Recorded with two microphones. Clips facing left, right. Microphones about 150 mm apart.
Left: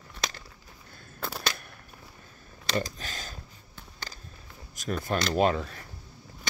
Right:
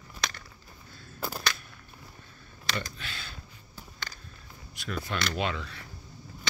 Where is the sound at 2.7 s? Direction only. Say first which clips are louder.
Left 6 dB; 40° left (ahead or behind).